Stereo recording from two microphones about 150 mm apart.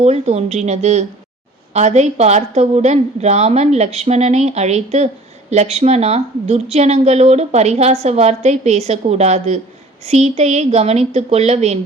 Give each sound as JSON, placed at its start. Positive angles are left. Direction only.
{"t": 0.0, "sound": "speech", "side_deg": -45}